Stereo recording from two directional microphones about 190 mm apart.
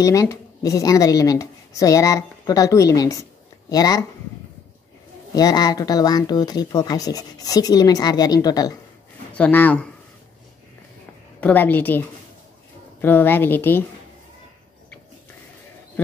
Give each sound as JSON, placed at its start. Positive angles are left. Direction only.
{"t": 0.0, "sound": "speech", "side_deg": 15}
{"t": 5.3, "sound": "speech", "side_deg": 20}
{"t": 9.3, "sound": "speech", "side_deg": 10}
{"t": 11.4, "sound": "speech", "side_deg": 10}